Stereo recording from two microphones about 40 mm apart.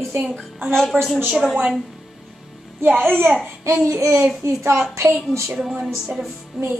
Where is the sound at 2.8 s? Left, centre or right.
Right.